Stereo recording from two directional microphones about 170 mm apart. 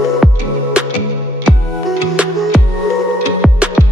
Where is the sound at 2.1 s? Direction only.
5° right (ahead or behind).